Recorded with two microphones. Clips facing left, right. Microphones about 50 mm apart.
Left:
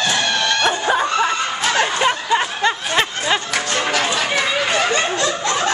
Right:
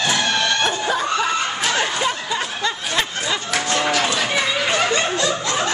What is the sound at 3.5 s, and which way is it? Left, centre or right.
Music, centre.